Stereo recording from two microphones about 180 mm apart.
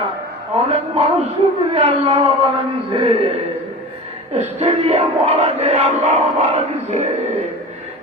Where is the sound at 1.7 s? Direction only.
30° right (ahead or behind).